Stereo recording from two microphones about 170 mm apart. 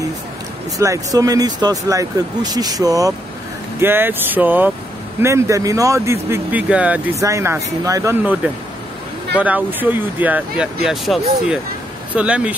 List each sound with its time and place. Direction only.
0.7 s speech: 20° right (ahead or behind)
7.2 s speech: 20° right (ahead or behind)
9.4 s speech: 10° right (ahead or behind)